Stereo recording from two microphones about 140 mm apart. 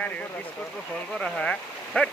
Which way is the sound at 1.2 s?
5° left (ahead or behind).